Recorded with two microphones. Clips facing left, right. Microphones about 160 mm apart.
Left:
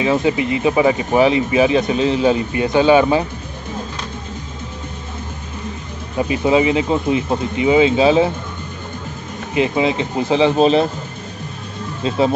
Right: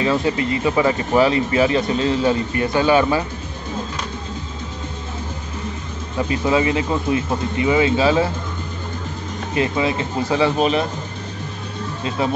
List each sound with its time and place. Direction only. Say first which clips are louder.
0.0 s speech: left 2 dB; 15° left (ahead or behind)
6.1 s speech: left 3 dB; 20° left (ahead or behind)
9.5 s speech: left 3 dB; 20° left (ahead or behind)